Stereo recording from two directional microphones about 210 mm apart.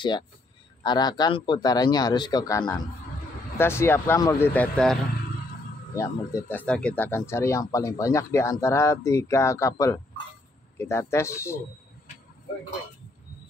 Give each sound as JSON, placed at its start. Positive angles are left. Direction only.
{"t": 0.8, "sound": "a man's voice", "side_deg": 20}
{"t": 5.9, "sound": "speech", "side_deg": 15}